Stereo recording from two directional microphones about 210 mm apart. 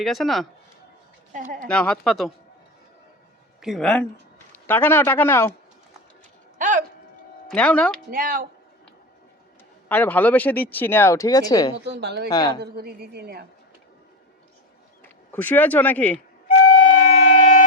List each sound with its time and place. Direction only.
0.0 s speech: centre (ahead or behind)
1.3 s speech: 40° right (ahead or behind)
1.6 s speech: 5° left (ahead or behind)
3.6 s speech: centre (ahead or behind)
6.6 s a sound: 35° right (ahead or behind)
7.4 s speech: 5° left (ahead or behind)
8.1 s speech: 40° right (ahead or behind)
9.9 s speech: 10° left (ahead or behind)
11.9 s a woman's voice: 50° right (ahead or behind)
12.3 s speech: 20° left (ahead or behind)
12.5 s a woman's voice: 50° right (ahead or behind)
15.3 s speech: 10° left (ahead or behind)
16.7 s shofar: 35° left (ahead or behind)